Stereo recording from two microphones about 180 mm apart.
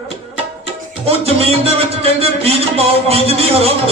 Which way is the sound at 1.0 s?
35° right (ahead or behind).